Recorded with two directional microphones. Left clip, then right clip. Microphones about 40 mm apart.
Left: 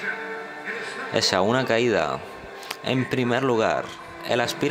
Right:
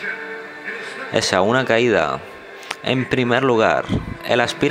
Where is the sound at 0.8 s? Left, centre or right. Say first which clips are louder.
Right 3 dB; right.